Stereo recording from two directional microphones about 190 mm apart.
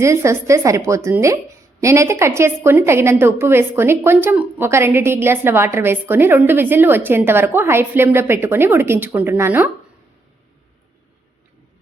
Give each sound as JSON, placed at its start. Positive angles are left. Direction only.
{"t": 0.0, "sound": "a woman's voice", "side_deg": -15}